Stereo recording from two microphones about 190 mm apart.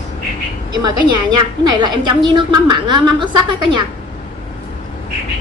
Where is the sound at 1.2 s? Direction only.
25° right (ahead or behind).